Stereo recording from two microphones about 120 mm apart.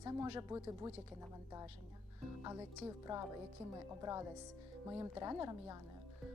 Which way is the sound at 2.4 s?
25° right (ahead or behind).